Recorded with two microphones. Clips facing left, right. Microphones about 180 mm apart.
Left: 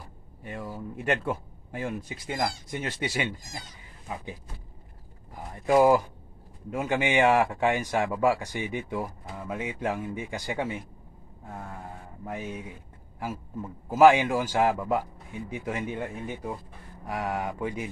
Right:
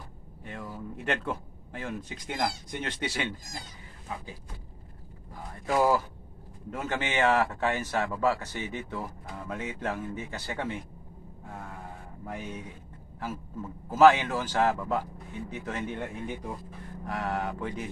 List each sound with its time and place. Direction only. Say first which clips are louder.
0.4 s a man's voice: left 3 dB; 10° left (ahead or behind)
5.5 s a man's voice: left 5 dB; 15° left (ahead or behind)
12.3 s a man's voice: left 3 dB; 10° left (ahead or behind)